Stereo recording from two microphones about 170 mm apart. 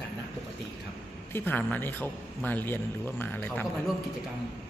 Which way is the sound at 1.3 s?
10° left (ahead or behind).